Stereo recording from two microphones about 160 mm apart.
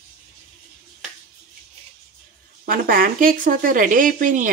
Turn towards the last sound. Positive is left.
turn(degrees=-55)  # may be behind; listen again after turning